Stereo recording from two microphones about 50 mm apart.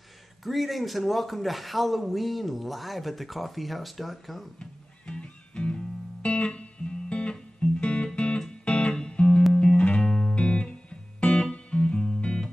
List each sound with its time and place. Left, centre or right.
0.4 s a man's voice: centre
4.6 s music: left